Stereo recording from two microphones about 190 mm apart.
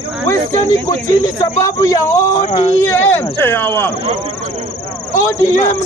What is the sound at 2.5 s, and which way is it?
Speech, 35° left (ahead or behind).